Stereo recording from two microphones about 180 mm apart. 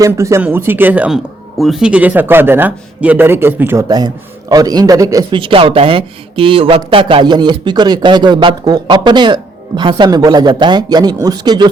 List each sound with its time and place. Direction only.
0.0 s speech: 15° right (ahead or behind)